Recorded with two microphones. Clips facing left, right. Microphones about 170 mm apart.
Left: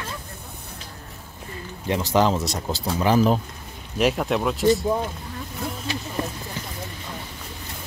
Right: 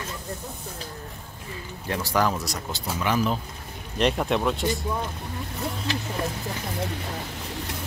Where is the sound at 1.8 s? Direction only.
20° left (ahead or behind); by 3.4 s 35° left (ahead or behind).